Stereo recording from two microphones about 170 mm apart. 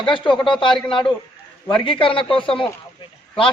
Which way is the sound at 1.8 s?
30° left (ahead or behind).